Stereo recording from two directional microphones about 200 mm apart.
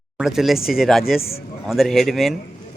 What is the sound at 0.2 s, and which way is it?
Speech, centre (ahead or behind).